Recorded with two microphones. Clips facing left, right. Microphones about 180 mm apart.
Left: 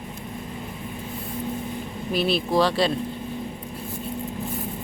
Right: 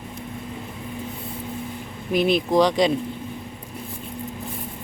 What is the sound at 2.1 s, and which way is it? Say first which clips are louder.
Speech: right 3 dB; 15° right (ahead or behind).